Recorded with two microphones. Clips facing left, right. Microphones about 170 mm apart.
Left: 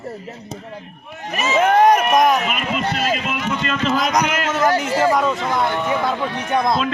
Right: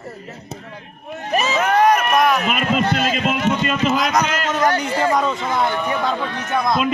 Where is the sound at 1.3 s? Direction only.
35° right (ahead or behind).